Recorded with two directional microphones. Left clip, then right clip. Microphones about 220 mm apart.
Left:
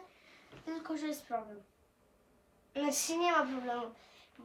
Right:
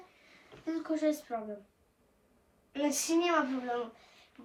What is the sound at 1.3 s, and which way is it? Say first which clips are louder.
Speech: even; 15° left (ahead or behind).